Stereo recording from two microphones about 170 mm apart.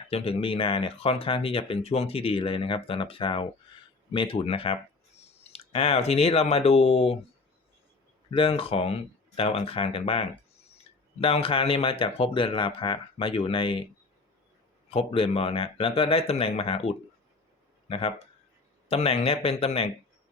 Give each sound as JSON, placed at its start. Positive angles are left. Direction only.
{"t": 0.1, "sound": "speech", "side_deg": 35}
{"t": 8.3, "sound": "speech", "side_deg": 35}
{"t": 14.8, "sound": "speech", "side_deg": 35}